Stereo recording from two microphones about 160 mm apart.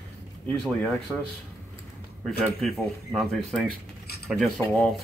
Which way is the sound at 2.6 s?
Centre (ahead or behind).